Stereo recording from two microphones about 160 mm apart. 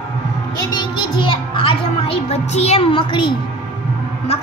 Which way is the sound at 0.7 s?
30° left (ahead or behind).